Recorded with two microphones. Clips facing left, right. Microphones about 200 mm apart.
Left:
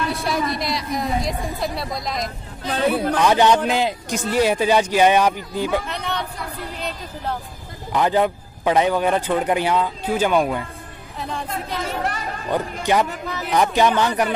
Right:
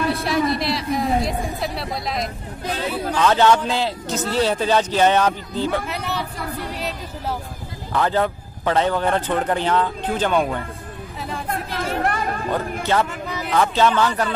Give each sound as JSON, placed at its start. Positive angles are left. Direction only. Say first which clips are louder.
{"t": 0.1, "sound": "a woman's voice", "louder": "right 3 dB", "side_deg": 0}
{"t": 2.7, "sound": "speech", "louder": "left 5 dB", "side_deg": 55}
{"t": 3.2, "sound": "a man's voice", "louder": "right 2 dB", "side_deg": 15}
{"t": 5.9, "sound": "a woman's voice", "louder": "even", "side_deg": -5}
{"t": 7.9, "sound": "a man's voice", "louder": "left 2 dB", "side_deg": 15}
{"t": 12.0, "sound": "speech", "louder": "right 4 dB", "side_deg": -55}
{"t": 13.5, "sound": "a man's voice", "louder": "left 1 dB", "side_deg": 15}